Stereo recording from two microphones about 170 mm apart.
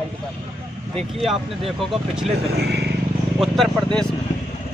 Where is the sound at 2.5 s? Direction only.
75° right (ahead or behind).